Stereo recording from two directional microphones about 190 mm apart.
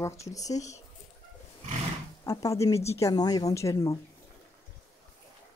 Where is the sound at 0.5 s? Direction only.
35° left (ahead or behind).